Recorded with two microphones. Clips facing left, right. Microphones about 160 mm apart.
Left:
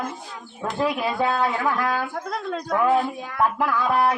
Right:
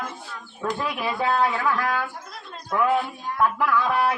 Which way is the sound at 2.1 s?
90° left.